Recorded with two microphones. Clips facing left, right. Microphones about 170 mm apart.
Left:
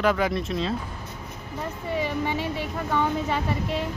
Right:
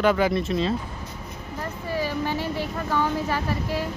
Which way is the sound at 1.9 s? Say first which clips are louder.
Even; 15° left (ahead or behind).